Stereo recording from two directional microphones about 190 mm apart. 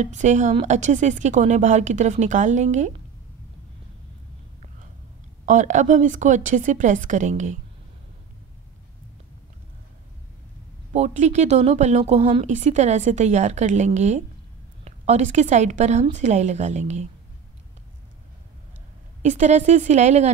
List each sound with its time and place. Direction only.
0.0 s a woman's voice: 40° right (ahead or behind)
5.4 s a woman's voice: 40° right (ahead or behind)
10.9 s a woman's voice: 35° right (ahead or behind)
19.2 s a woman's voice: 40° right (ahead or behind)